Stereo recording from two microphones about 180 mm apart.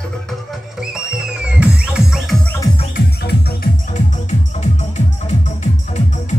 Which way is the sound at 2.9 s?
55° left (ahead or behind).